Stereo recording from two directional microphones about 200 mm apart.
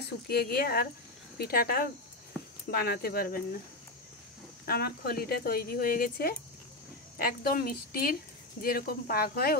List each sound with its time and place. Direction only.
0.3 s speech: 50° left (ahead or behind)
4.6 s speech: 50° left (ahead or behind)